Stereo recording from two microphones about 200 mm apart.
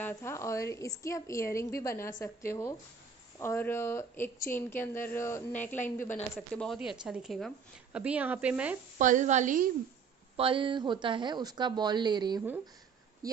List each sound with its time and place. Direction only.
0.0 s a woman's voice: 15° left (ahead or behind)
5.8 s a woman's voice: 40° left (ahead or behind)
6.3 s speech: centre (ahead or behind)
8.9 s a woman's voice: 40° right (ahead or behind)
10.3 s speech: 25° right (ahead or behind)